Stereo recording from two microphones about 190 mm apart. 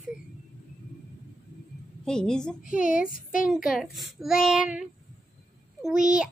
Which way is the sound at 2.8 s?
45° left (ahead or behind).